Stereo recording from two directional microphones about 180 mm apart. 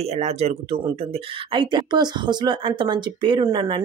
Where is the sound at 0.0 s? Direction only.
35° right (ahead or behind).